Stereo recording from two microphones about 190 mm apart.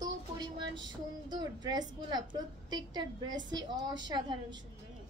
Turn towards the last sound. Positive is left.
turn(degrees=-20)  # may be behind; listen again after turning